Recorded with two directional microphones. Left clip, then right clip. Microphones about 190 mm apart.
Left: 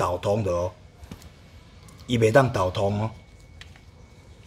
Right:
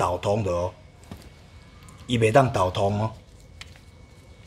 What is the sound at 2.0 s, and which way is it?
Speech, centre (ahead or behind).